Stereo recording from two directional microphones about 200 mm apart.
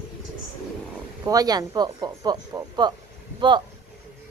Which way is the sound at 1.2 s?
20° right (ahead or behind).